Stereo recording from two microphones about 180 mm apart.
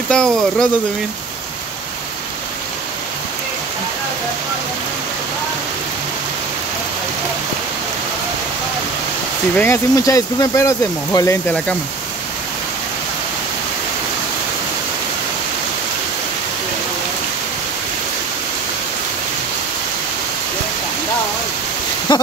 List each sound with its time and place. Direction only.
0.1 s speech: 5° left (ahead or behind)
9.6 s speech: 15° left (ahead or behind)
22.1 s a sound: 25° left (ahead or behind)